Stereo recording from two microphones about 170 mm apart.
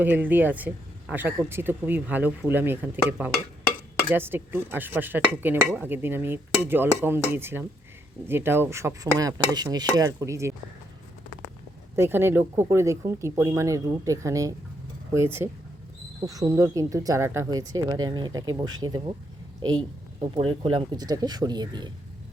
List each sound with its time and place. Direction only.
0.0 s speech: 10° right (ahead or behind)
11.9 s speech: 15° right (ahead or behind)
20.2 s speech: 30° right (ahead or behind)